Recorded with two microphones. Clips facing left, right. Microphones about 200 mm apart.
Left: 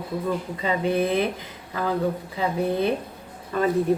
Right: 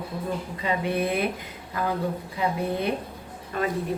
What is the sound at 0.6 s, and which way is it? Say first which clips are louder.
Speech: left 3 dB; 30° left (ahead or behind).